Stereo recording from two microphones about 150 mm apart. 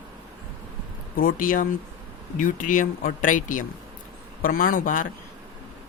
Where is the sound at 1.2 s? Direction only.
70° left (ahead or behind).